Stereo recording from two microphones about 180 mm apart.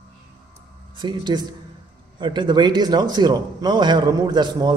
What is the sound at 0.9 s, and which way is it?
A man's voice, 25° right (ahead or behind).